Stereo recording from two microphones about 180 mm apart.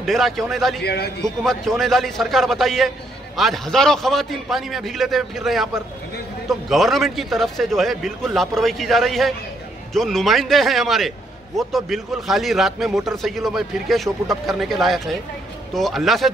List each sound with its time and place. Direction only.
0.0 s a man's voice: centre (ahead or behind)
0.8 s a man's voice: 65° left (ahead or behind)
1.2 s a man's voice: centre (ahead or behind)